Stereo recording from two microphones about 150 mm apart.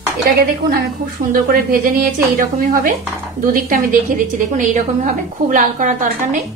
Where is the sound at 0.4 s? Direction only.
85° right.